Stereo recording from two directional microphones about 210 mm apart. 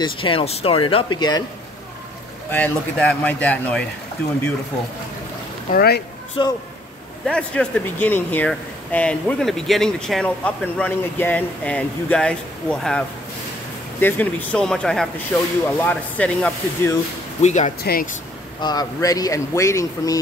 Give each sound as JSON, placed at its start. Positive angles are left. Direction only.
{"t": 0.0, "sound": "speech", "side_deg": 25}
{"t": 2.5, "sound": "speech", "side_deg": 5}
{"t": 5.8, "sound": "speech", "side_deg": 50}
{"t": 6.4, "sound": "speech", "side_deg": 25}
{"t": 7.2, "sound": "speech", "side_deg": 5}
{"t": 17.4, "sound": "speech", "side_deg": 35}
{"t": 18.6, "sound": "speech", "side_deg": 20}